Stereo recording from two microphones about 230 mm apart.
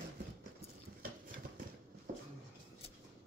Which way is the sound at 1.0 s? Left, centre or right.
Right.